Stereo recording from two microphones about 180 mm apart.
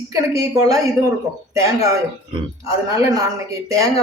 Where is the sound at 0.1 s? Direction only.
20° right (ahead or behind).